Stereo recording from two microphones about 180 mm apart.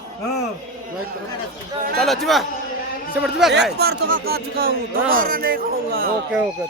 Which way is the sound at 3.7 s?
60° right (ahead or behind).